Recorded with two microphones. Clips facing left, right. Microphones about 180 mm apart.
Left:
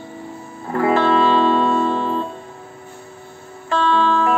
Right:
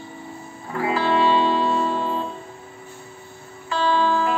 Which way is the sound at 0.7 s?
50° left (ahead or behind).